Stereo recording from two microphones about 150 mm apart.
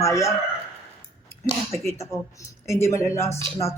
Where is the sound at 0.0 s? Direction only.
20° left (ahead or behind).